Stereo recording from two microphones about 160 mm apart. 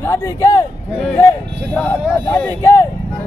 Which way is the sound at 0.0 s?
15° left (ahead or behind).